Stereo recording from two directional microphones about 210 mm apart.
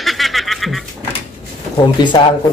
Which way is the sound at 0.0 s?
Centre (ahead or behind).